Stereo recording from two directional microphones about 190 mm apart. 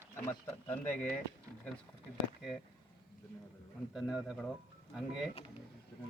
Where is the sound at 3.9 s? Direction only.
5° right (ahead or behind).